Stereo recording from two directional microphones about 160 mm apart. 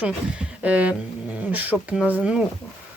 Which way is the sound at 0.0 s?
10° right (ahead or behind).